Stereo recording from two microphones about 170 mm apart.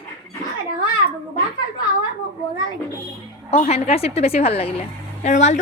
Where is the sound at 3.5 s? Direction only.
40° left (ahead or behind).